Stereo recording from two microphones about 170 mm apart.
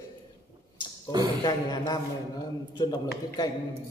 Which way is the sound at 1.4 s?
25° left (ahead or behind).